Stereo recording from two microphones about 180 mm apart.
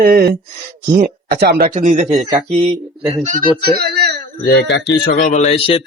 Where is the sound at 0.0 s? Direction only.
60° right (ahead or behind).